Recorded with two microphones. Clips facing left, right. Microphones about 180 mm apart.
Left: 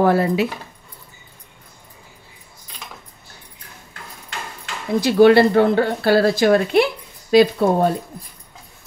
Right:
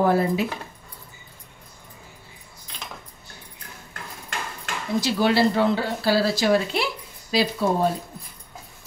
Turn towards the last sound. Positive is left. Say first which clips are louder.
# left 6 dB
turn(degrees=55)  # may be behind; listen again after turning